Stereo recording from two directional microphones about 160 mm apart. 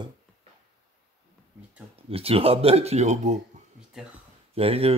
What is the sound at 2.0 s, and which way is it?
Speech, 35° right (ahead or behind).